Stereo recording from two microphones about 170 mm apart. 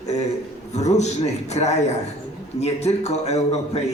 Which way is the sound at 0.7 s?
40° left (ahead or behind).